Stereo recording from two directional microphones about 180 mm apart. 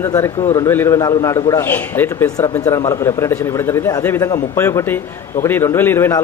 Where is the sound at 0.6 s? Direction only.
15° left (ahead or behind).